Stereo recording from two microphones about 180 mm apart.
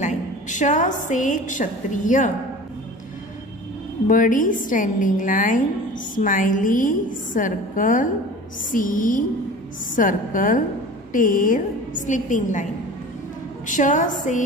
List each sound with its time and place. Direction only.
0.0 s a woman's voice: 45° left (ahead or behind)
4.1 s a woman's voice: 50° left (ahead or behind)
13.7 s a woman's voice: 45° left (ahead or behind)